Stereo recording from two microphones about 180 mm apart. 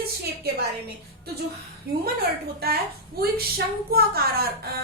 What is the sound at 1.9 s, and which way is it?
Speech, 60° right (ahead or behind).